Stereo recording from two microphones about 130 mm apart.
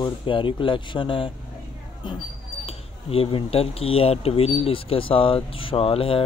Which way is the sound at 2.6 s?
45° left (ahead or behind).